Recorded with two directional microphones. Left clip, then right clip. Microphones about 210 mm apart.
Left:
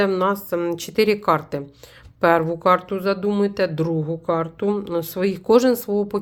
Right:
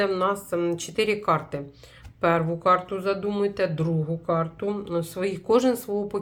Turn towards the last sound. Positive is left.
turn(degrees=40)  # may be behind; listen again after turning